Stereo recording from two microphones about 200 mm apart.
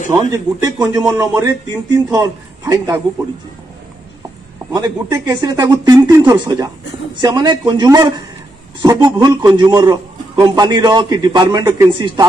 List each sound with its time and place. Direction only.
0.1 s a man's voice: 15° right (ahead or behind)
4.7 s a man's voice: 20° right (ahead or behind)